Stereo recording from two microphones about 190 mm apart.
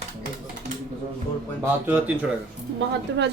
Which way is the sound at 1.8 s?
10° right (ahead or behind).